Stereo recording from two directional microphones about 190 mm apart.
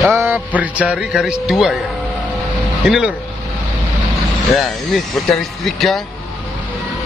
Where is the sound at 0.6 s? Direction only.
5° right (ahead or behind).